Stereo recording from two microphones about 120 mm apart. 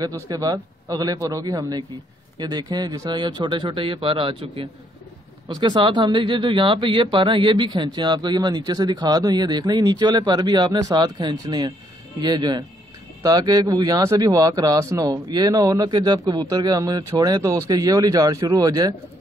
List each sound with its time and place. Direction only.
0.0 s speech: 30° right (ahead or behind)